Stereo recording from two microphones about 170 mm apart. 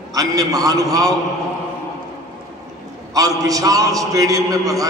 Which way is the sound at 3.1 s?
20° right (ahead or behind).